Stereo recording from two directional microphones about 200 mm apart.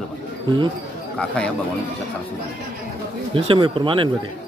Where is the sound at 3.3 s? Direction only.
25° right (ahead or behind).